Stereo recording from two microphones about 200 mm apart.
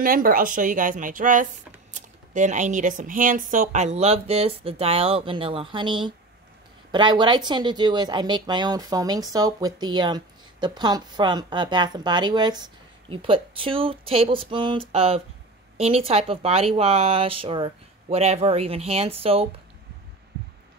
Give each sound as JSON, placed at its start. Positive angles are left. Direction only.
{"t": 0.0, "sound": "speech", "side_deg": -45}